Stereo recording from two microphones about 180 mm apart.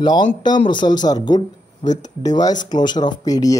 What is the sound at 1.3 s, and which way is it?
Speech, 40° left (ahead or behind).